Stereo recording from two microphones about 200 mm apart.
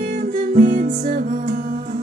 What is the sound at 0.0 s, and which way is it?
Music, 40° right (ahead or behind).